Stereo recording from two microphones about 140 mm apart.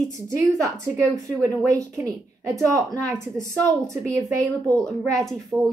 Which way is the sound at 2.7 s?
25° right (ahead or behind).